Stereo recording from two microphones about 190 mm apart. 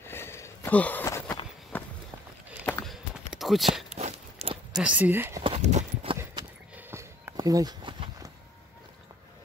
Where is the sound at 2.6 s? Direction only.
Centre (ahead or behind).